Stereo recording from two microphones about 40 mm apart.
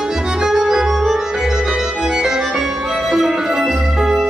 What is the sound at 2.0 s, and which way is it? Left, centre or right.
Music, centre.